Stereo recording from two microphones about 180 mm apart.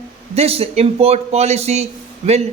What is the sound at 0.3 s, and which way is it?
A man's voice, 35° right (ahead or behind).